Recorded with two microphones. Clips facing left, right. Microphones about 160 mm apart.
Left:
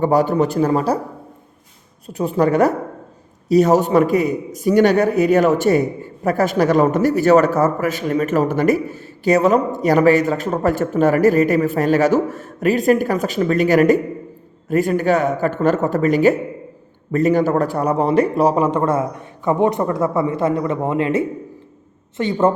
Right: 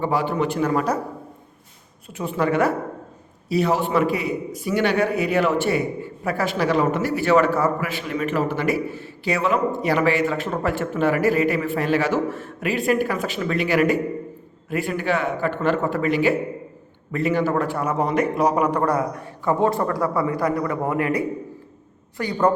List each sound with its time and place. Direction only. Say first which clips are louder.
0.0 s a man's voice: left 6 dB; 40° left (ahead or behind)
2.0 s a man's voice: left 6 dB; 35° left (ahead or behind)